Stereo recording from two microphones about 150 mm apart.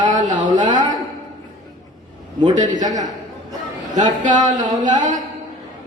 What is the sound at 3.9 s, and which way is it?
Speech, 55° right (ahead or behind).